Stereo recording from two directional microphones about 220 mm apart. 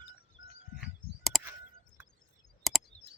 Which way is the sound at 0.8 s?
Centre (ahead or behind).